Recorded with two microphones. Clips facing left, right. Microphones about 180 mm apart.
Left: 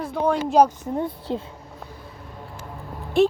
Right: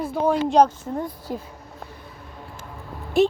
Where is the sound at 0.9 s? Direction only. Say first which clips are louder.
Left 2 dB; 20° left (ahead or behind).